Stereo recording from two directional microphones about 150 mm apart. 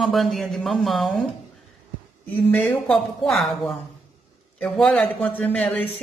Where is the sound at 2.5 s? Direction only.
10° left (ahead or behind).